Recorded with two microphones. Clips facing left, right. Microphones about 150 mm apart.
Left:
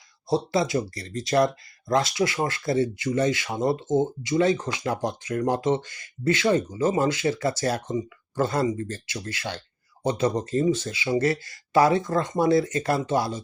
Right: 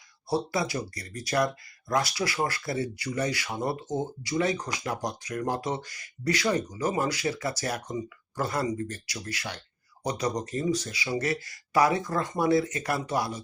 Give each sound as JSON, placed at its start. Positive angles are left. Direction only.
{"t": 0.3, "sound": "speech", "side_deg": 25}